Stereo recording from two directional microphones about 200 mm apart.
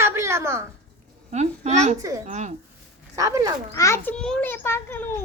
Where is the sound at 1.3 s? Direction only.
35° right (ahead or behind).